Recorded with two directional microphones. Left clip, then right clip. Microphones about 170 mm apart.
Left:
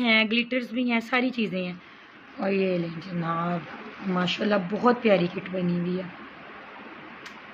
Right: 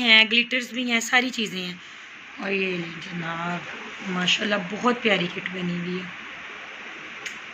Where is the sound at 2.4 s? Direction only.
70° left (ahead or behind).